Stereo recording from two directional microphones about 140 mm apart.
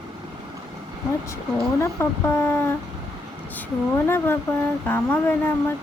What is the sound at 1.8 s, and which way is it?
Speech, 20° left (ahead or behind).